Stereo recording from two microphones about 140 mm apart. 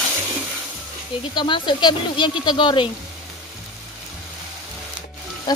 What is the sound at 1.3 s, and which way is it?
Speech, 35° left (ahead or behind).